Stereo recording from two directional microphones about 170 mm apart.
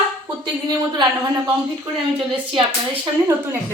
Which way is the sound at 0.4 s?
25° right (ahead or behind).